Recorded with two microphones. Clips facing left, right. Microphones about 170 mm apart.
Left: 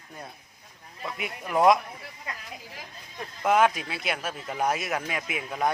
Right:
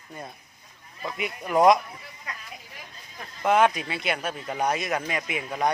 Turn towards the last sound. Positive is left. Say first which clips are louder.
# right 1 dB
turn(degrees=0)  # may be behind; listen again after turning